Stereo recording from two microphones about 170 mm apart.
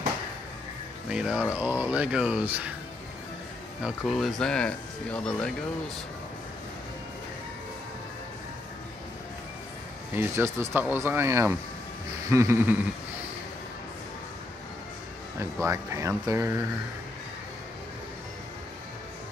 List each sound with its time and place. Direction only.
1.1 s speech: 5° right (ahead or behind)
4.0 s speech: centre (ahead or behind)
10.1 s speech: 15° right (ahead or behind)
15.3 s speech: 15° right (ahead or behind)